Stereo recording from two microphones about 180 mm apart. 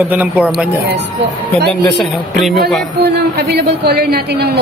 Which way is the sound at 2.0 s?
Centre (ahead or behind).